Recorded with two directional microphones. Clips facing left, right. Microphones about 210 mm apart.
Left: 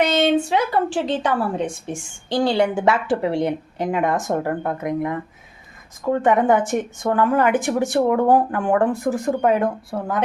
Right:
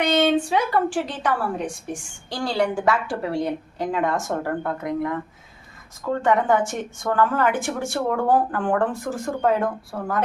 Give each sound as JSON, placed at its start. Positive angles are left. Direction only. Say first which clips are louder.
{"t": 0.5, "sound": "a woman's voice", "louder": "left 1 dB", "side_deg": 25}
{"t": 6.2, "sound": "a woman's voice", "louder": "left 2 dB", "side_deg": 20}